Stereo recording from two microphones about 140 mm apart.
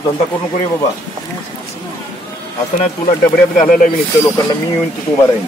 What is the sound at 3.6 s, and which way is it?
Speech, 70° left (ahead or behind).